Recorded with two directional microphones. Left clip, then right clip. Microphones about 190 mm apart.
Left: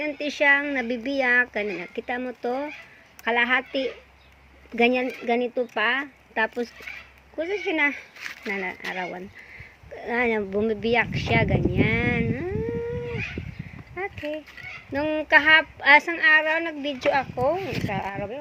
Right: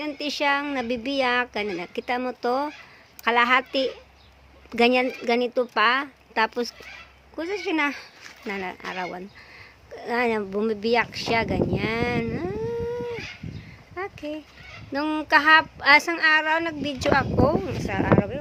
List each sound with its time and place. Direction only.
0.0 s speech: 10° right (ahead or behind)
13.9 s a sound: 5° right (ahead or behind)
14.9 s speech: 10° right (ahead or behind)